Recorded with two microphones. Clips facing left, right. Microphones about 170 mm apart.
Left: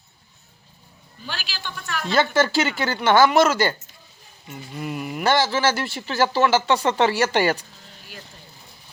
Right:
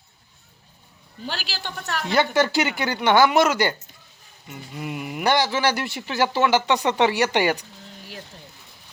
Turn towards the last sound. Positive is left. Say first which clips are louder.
# left 1 dB
turn(degrees=-15)  # may be behind; listen again after turning